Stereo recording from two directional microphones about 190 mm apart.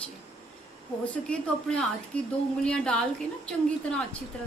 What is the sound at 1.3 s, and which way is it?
A woman's voice, 5° left (ahead or behind).